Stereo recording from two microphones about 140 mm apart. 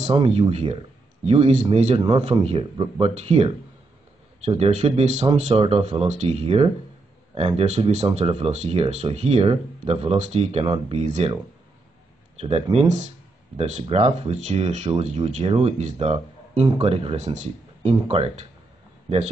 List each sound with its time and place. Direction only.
0.0 s speech: 45° right (ahead or behind)
2.0 s speech: 45° right (ahead or behind)
12.4 s speech: 50° right (ahead or behind)
14.9 s speech: 45° right (ahead or behind)
18.0 s speech: 45° right (ahead or behind)